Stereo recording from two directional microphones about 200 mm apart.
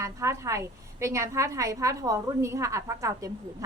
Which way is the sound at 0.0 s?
15° right (ahead or behind).